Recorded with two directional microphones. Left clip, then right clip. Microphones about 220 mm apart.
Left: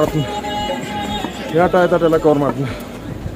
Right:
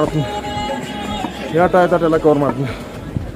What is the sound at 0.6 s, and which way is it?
Music, 30° right (ahead or behind).